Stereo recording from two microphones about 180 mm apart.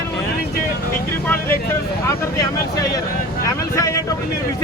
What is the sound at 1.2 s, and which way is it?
Speech, 10° left (ahead or behind).